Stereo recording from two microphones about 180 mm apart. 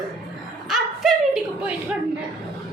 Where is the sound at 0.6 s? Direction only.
Centre (ahead or behind).